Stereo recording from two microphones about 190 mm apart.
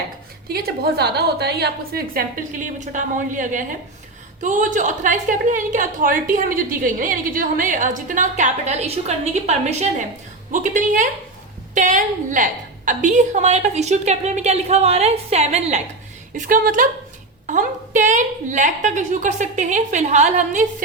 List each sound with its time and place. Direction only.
0.4 s a woman's voice: 55° right (ahead or behind)